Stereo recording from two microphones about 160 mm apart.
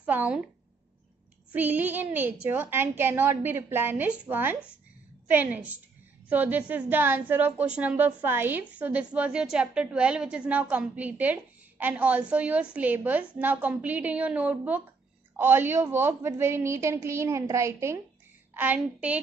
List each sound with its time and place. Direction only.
0.0 s a woman's voice: 10° right (ahead or behind)
1.5 s a woman's voice: 10° right (ahead or behind)